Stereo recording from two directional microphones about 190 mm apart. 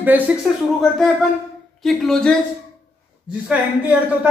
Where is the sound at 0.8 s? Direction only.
Centre (ahead or behind).